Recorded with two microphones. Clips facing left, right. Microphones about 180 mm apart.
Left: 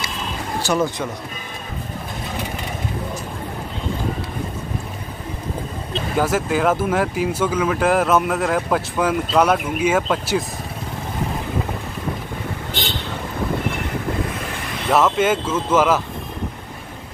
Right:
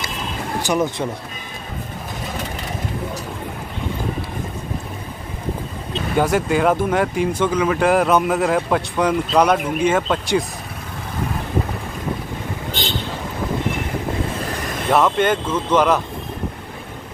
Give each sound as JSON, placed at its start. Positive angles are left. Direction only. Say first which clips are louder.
{"t": 0.6, "sound": "speech", "louder": "even", "side_deg": -15}
{"t": 6.1, "sound": "speech", "louder": "right 2 dB", "side_deg": 0}
{"t": 14.9, "sound": "speech", "louder": "even", "side_deg": 0}